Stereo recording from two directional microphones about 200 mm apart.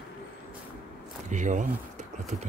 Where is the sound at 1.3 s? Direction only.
40° right (ahead or behind).